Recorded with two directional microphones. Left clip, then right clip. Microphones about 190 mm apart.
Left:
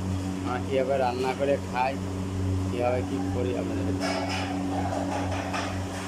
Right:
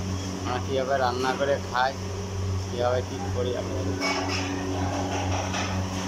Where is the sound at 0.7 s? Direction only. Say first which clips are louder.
Even; 10° left (ahead or behind).